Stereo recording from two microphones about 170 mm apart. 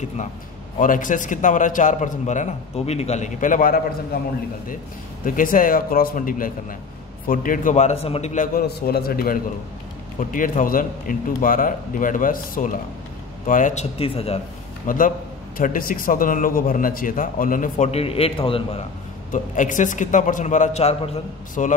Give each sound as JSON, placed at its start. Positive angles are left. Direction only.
{"t": 0.7, "sound": "a man's voice", "side_deg": 50}
{"t": 5.2, "sound": "a man's voice", "side_deg": 55}
{"t": 8.6, "sound": "a man's voice", "side_deg": 65}
{"t": 13.9, "sound": "speech", "side_deg": 35}
{"t": 14.9, "sound": "a man's voice", "side_deg": 55}
{"t": 19.3, "sound": "a man's voice", "side_deg": 50}